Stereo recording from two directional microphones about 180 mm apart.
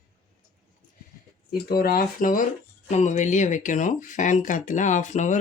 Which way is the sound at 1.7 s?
55° left (ahead or behind).